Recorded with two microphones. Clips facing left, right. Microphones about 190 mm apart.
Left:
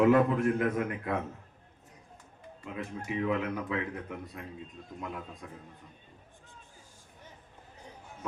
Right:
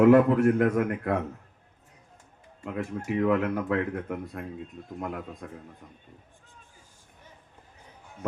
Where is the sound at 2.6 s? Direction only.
65° right (ahead or behind).